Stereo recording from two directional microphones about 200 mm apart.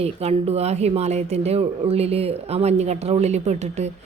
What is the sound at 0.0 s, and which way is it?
Speech, 30° right (ahead or behind).